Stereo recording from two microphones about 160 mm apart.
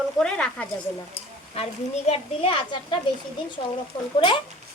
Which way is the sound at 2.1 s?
35° left (ahead or behind).